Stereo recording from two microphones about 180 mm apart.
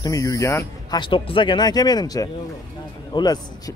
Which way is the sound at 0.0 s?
20° left (ahead or behind).